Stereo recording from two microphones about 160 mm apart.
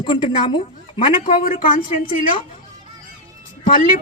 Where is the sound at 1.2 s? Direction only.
60° left (ahead or behind).